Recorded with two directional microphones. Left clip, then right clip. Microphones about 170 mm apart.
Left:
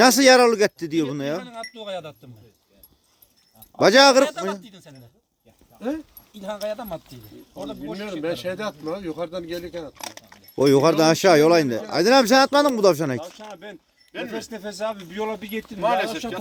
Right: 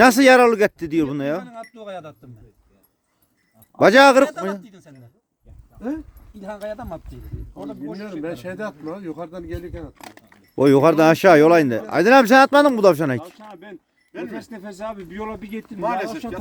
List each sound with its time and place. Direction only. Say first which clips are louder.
0.0 s speech: right 2 dB; 20° right (ahead or behind)
1.4 s speech: even; centre (ahead or behind)
3.8 s speech: right 2 dB; 20° right (ahead or behind)
4.6 s speech: even; centre (ahead or behind)
6.4 s speech: left 2 dB; 5° left (ahead or behind)
8.2 s speech: left 3 dB; 15° right (ahead or behind)
9.9 s speech: left 5 dB; 45° left (ahead or behind)
10.5 s speech: right 3 dB; 25° right (ahead or behind)
13.2 s speech: left 2 dB; 40° left (ahead or behind)
15.8 s speech: left 2 dB; centre (ahead or behind)